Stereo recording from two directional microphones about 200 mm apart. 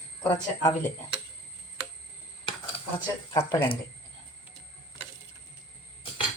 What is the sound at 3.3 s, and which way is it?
Speech, 15° left (ahead or behind).